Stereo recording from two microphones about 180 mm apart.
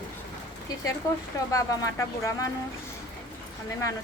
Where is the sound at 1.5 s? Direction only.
15° left (ahead or behind).